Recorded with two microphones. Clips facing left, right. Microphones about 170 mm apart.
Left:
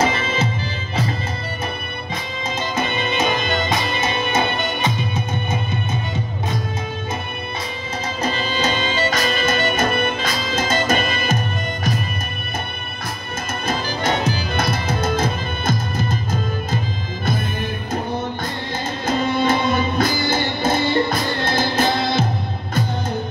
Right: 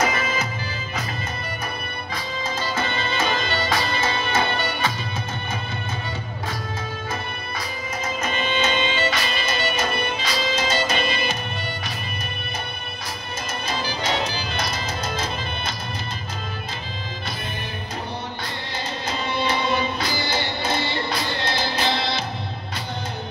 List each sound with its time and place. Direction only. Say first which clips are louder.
0.0 s music: left 3 dB; 25° left (ahead or behind)
2.7 s music: left 5 dB; 20° left (ahead or behind)
8.2 s music: left 3 dB; 35° left (ahead or behind)
13.7 s music: left 5 dB; 50° left (ahead or behind)
19.0 s music: left 7 dB; 45° left (ahead or behind)